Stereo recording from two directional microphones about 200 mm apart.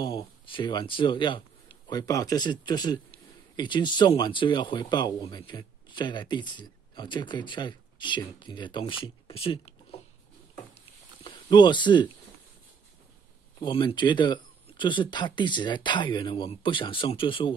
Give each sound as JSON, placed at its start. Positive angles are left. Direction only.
{"t": 0.0, "sound": "speech", "side_deg": 25}
{"t": 11.2, "sound": "speech", "side_deg": 20}
{"t": 13.6, "sound": "speech", "side_deg": 25}